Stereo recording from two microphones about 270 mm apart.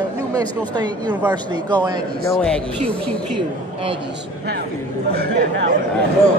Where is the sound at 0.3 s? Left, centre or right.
Centre.